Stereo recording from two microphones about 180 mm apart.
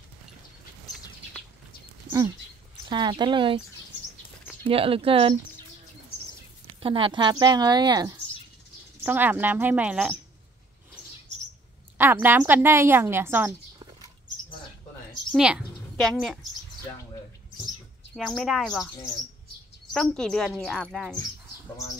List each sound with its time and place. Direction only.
2.9 s a woman's voice: 25° right (ahead or behind)
4.6 s speech: 30° right (ahead or behind)
6.8 s a woman's voice: 30° right (ahead or behind)
9.0 s a woman's voice: 10° right (ahead or behind)
12.0 s a woman's voice: 10° right (ahead or behind)
15.3 s a woman's voice: 5° right (ahead or behind)
18.1 s speech: centre (ahead or behind)